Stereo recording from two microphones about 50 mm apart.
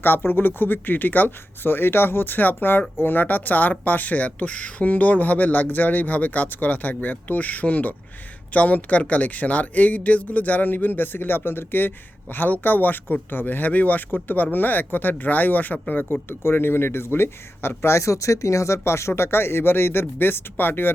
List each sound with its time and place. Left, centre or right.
0.0 s speech: left
16.4 s speech: left